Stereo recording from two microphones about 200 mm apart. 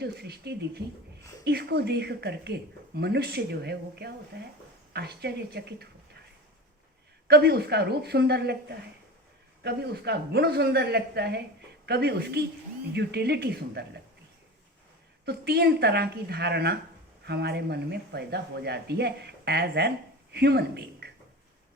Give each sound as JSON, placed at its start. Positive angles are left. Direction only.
{"t": 0.0, "sound": "a woman's voice", "side_deg": -55}
{"t": 7.3, "sound": "a woman's voice", "side_deg": -55}
{"t": 9.6, "sound": "a woman's voice", "side_deg": -55}
{"t": 15.2, "sound": "a woman's voice", "side_deg": -55}